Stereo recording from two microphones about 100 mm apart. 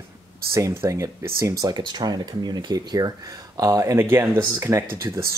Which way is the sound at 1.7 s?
45° right (ahead or behind).